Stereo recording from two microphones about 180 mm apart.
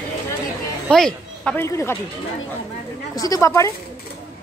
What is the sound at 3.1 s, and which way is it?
Speech, 20° left (ahead or behind).